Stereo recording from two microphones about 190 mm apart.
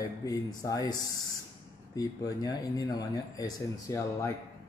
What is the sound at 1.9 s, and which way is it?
Speech, 20° left (ahead or behind).